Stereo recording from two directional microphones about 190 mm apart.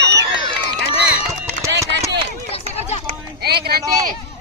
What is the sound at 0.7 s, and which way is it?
Run, 10° right (ahead or behind).